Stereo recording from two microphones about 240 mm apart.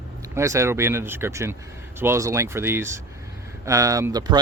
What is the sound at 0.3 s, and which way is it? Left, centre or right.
Speech, centre.